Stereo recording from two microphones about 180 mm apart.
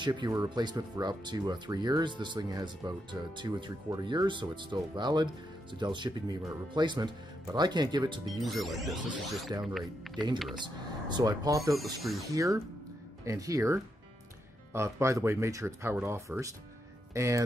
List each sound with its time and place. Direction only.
0.0 s speech: 25° right (ahead or behind)
8.4 s speech: centre (ahead or behind)
9.5 s speech: 25° right (ahead or behind)
9.8 s speech: centre (ahead or behind)
10.5 s speech: 25° right (ahead or behind)